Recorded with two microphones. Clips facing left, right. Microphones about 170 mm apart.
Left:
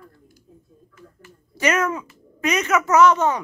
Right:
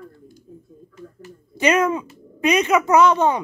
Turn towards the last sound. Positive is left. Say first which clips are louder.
# right 1 dB
turn(degrees=-15)  # may be behind; listen again after turning